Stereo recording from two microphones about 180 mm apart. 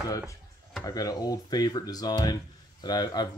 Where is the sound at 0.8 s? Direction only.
20° left (ahead or behind).